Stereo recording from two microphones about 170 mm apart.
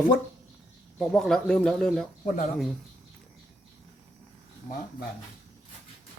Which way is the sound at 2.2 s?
50° left (ahead or behind).